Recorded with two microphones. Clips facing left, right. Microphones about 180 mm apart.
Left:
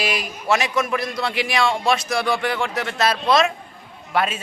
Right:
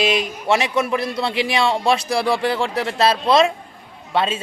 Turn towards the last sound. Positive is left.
turn(degrees=-25)  # may be behind; listen again after turning